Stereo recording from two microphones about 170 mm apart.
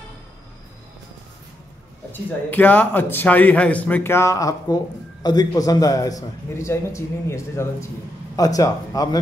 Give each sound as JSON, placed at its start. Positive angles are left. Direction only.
{"t": 2.2, "sound": "a man's voice", "side_deg": 10}